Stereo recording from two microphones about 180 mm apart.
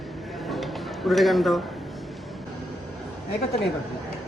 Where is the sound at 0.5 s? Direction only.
Centre (ahead or behind).